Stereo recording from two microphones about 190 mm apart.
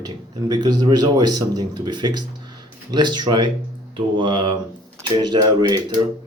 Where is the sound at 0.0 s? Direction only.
20° right (ahead or behind).